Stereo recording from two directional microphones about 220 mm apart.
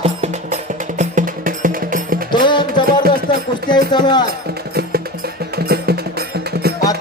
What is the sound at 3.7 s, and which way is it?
Speech, 20° left (ahead or behind).